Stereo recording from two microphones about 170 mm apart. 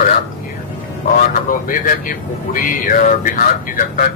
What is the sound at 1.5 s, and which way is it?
Speech, 55° left (ahead or behind).